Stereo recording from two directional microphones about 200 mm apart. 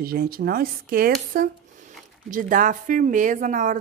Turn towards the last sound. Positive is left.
turn(degrees=-40)  # may be behind; listen again after turning